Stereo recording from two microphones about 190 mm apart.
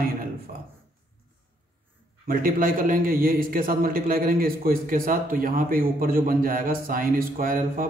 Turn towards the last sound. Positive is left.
turn(degrees=-50)  # may be behind; listen again after turning